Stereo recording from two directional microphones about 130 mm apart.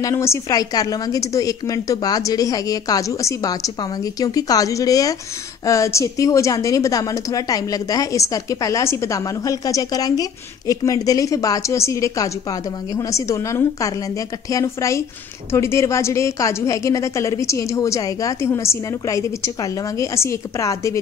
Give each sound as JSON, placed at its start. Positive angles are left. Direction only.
{"t": 0.0, "sound": "a woman's voice", "side_deg": 20}